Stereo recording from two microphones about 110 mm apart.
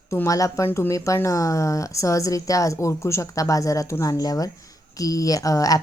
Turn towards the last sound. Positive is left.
turn(degrees=30)  # may be behind; listen again after turning